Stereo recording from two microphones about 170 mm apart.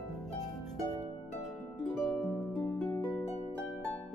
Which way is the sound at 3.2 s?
40° left (ahead or behind).